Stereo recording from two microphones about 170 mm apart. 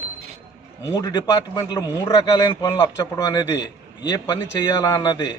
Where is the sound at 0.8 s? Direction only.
25° left (ahead or behind).